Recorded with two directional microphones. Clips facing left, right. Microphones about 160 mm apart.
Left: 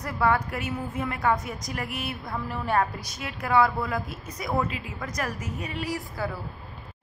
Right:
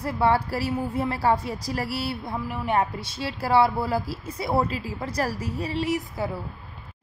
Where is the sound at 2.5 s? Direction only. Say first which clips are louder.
Right 1 dB; 15° right (ahead or behind).